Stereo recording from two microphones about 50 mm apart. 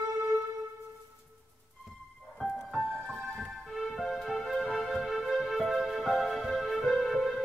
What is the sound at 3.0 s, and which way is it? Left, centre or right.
Music, centre.